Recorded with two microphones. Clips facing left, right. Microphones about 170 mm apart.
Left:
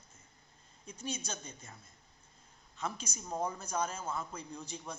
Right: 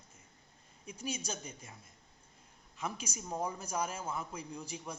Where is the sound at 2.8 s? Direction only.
10° right (ahead or behind).